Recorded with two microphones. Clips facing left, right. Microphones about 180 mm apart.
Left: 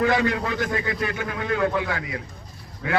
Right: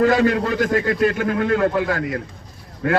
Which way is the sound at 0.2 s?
55° right (ahead or behind).